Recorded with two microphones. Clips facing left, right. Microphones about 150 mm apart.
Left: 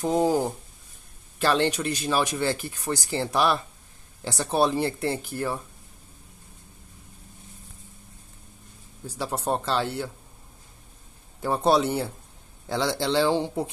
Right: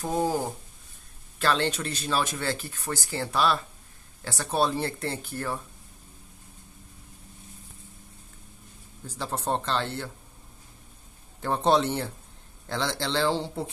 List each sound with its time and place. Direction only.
0.0 s speech: 15° left (ahead or behind)
9.0 s speech: 10° left (ahead or behind)
11.4 s speech: 10° left (ahead or behind)